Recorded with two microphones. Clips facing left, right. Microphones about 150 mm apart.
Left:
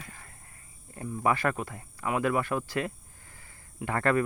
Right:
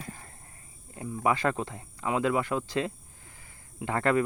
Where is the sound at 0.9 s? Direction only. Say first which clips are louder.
Even; 15° right (ahead or behind).